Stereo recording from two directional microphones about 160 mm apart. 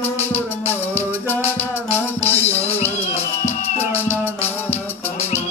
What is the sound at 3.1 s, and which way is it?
Music, 40° left (ahead or behind).